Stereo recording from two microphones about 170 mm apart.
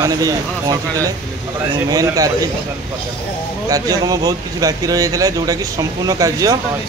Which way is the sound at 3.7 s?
20° right (ahead or behind).